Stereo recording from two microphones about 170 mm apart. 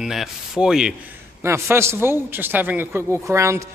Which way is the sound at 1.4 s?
15° right (ahead or behind).